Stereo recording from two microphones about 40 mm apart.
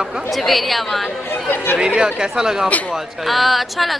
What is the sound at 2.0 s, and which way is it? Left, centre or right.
Speech, right.